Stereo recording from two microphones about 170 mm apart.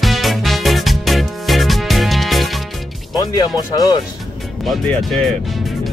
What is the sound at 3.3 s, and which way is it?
Music, 20° left (ahead or behind).